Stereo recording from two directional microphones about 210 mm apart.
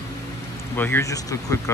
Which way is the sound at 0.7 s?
10° left (ahead or behind).